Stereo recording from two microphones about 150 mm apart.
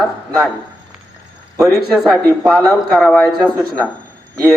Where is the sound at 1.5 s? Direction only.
20° right (ahead or behind).